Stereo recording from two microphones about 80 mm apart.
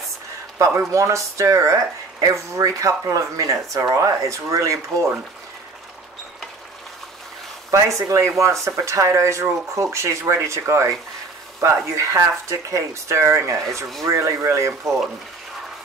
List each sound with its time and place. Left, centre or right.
0.7 s speech: right
7.7 s speech: right